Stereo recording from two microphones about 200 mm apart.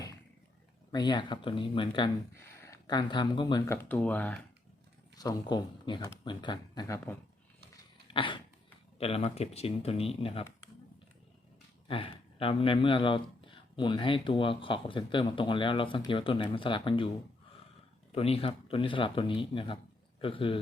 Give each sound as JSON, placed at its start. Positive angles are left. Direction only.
{"t": 0.9, "sound": "speech", "side_deg": 20}
{"t": 2.3, "sound": "speech", "side_deg": 10}
{"t": 5.1, "sound": "speech", "side_deg": 20}
{"t": 8.1, "sound": "a sound", "side_deg": 25}
{"t": 9.0, "sound": "speech", "side_deg": 30}
{"t": 11.9, "sound": "speech", "side_deg": 25}
{"t": 18.1, "sound": "speech", "side_deg": 30}